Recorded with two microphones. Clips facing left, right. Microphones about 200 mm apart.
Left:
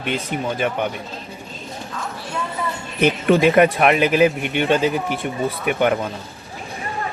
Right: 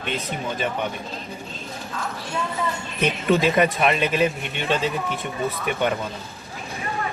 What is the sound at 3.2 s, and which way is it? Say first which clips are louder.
Speech: left 5 dB; 65° left (ahead or behind).